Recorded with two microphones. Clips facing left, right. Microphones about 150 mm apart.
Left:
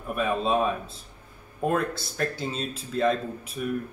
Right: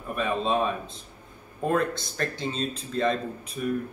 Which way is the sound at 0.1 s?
5° left (ahead or behind).